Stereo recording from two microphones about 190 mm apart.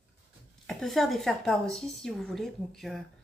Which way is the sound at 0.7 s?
Centre (ahead or behind).